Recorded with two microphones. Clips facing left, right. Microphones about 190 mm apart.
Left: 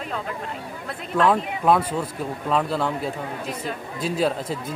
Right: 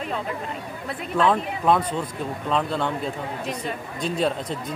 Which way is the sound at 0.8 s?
Centre (ahead or behind).